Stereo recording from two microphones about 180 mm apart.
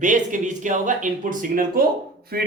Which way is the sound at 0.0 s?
45° right (ahead or behind).